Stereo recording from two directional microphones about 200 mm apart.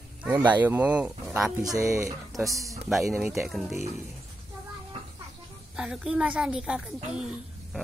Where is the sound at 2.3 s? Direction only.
Centre (ahead or behind).